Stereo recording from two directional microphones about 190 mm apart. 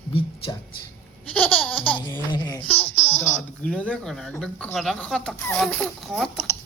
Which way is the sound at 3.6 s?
5° left (ahead or behind).